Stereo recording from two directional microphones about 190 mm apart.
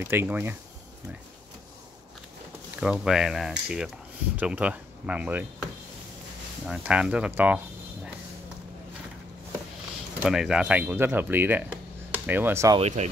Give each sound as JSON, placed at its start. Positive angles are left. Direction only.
{"t": 0.0, "sound": "speech", "side_deg": -10}
{"t": 2.8, "sound": "speech", "side_deg": -5}
{"t": 6.7, "sound": "speech", "side_deg": -5}
{"t": 10.2, "sound": "speech", "side_deg": -5}
{"t": 12.7, "sound": "speech", "side_deg": -35}